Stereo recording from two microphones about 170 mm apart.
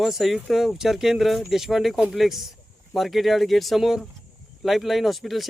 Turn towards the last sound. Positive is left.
turn(degrees=0)  # may be behind; listen again after turning